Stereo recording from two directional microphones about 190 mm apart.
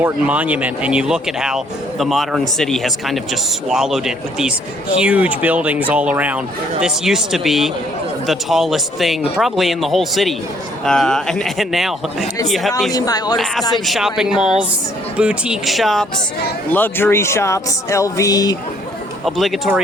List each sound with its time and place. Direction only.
0.0 s speech: 5° right (ahead or behind)
12.9 s speech: 20° left (ahead or behind)
13.3 s speech: centre (ahead or behind); by 18.5 s 20° left (ahead or behind)
19.2 s speech: centre (ahead or behind)